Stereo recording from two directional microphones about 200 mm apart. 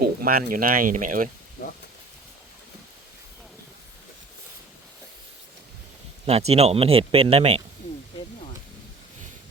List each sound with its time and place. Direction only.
0.0 s speech: 50° right (ahead or behind)
6.2 s speech: 30° right (ahead or behind)